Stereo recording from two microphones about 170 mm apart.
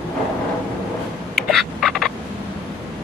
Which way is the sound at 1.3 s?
Centre (ahead or behind).